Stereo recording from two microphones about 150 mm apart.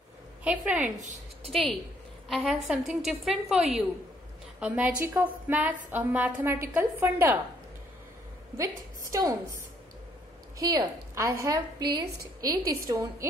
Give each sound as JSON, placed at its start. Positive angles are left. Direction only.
{"t": 0.4, "sound": "a woman's voice", "side_deg": -10}
{"t": 0.8, "sound": "speech", "side_deg": -55}
{"t": 2.2, "sound": "a woman's voice", "side_deg": 0}
{"t": 9.1, "sound": "a woman's voice", "side_deg": -20}
{"t": 10.6, "sound": "a woman's voice", "side_deg": -25}